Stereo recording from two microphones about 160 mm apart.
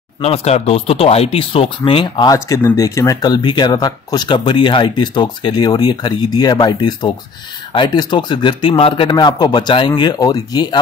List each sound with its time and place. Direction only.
0.2 s speech: 40° left (ahead or behind)
2.3 s speech: 20° left (ahead or behind)